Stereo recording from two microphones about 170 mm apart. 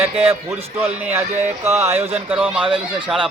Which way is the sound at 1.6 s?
15° right (ahead or behind).